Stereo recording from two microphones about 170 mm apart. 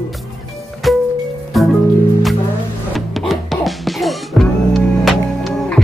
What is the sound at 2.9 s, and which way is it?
Music, centre (ahead or behind).